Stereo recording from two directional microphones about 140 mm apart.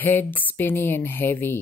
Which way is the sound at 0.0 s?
15° left (ahead or behind).